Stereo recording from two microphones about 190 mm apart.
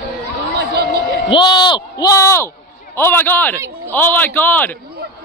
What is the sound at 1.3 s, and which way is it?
A man's voice, 25° left (ahead or behind).